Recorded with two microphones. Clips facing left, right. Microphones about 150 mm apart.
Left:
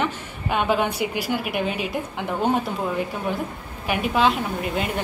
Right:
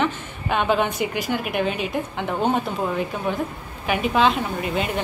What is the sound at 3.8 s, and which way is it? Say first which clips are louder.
Speech: right 1 dB; 5° left (ahead or behind).